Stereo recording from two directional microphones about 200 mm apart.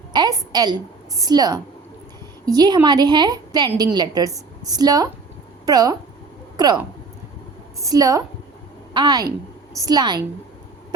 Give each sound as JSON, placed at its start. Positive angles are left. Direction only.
{"t": 0.1, "sound": "a woman's voice", "side_deg": -20}